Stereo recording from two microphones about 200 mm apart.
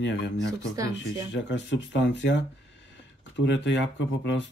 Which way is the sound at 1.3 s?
60° left (ahead or behind).